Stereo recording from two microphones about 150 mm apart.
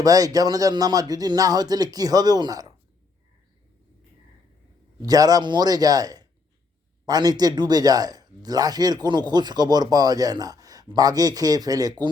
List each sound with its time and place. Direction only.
0.0 s speech: 25° right (ahead or behind)
5.0 s speech: 25° right (ahead or behind)